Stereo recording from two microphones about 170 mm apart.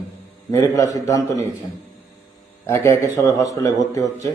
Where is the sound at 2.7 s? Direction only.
15° left (ahead or behind).